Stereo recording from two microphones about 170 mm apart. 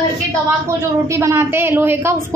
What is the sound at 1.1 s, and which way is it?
A woman's voice, 15° right (ahead or behind).